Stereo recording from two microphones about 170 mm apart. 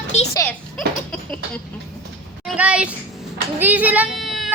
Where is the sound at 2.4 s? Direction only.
5° right (ahead or behind).